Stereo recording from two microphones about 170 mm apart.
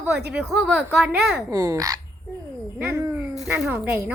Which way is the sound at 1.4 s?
20° right (ahead or behind).